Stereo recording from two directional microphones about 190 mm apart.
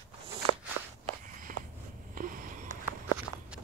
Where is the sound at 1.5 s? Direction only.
45° right (ahead or behind).